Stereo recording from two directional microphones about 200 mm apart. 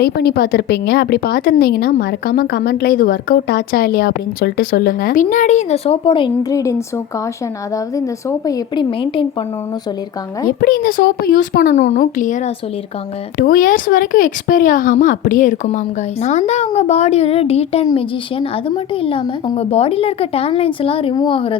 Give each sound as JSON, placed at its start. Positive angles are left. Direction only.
{"t": 0.0, "sound": "a woman's voice", "side_deg": 50}
{"t": 7.9, "sound": "a woman's voice", "side_deg": 15}
{"t": 10.6, "sound": "speech", "side_deg": 45}
{"t": 13.4, "sound": "a woman's voice", "side_deg": 45}